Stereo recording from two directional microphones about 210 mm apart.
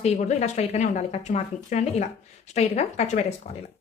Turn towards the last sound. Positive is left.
turn(degrees=35)  # may be behind; listen again after turning